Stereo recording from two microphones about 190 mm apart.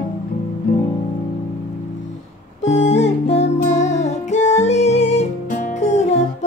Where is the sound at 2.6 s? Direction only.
35° left (ahead or behind).